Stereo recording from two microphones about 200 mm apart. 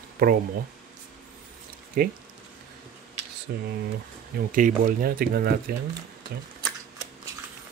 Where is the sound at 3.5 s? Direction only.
55° right (ahead or behind).